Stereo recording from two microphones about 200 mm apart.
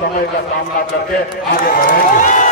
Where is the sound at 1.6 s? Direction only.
45° left (ahead or behind).